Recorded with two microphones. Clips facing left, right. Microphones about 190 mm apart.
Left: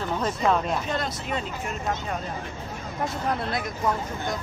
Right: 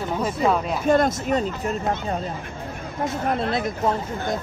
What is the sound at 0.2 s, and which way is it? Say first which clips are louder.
Speech: right 2 dB; 5° right (ahead or behind).